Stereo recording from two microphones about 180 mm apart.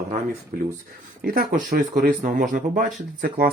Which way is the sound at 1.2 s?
55° right (ahead or behind).